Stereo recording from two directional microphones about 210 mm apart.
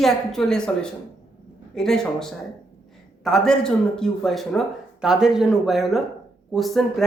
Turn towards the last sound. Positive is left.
turn(degrees=0)  # may be behind; listen again after turning